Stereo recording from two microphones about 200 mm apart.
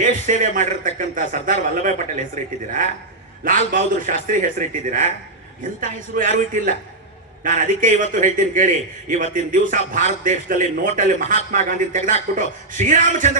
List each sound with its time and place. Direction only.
0.0 s a man's voice: 40° right (ahead or behind)